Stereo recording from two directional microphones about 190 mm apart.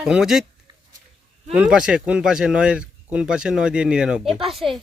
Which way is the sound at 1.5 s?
5° right (ahead or behind).